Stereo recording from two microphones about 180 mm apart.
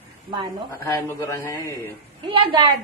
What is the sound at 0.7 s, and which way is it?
A man's voice, 15° left (ahead or behind).